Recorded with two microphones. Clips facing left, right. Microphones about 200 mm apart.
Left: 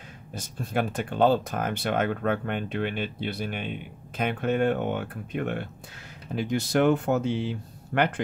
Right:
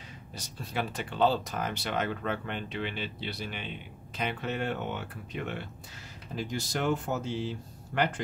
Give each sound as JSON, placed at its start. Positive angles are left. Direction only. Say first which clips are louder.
{"t": 0.3, "sound": "speech", "louder": "left 8 dB", "side_deg": 50}